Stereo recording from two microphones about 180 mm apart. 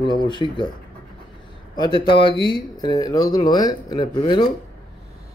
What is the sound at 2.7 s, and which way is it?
Speech, 20° left (ahead or behind).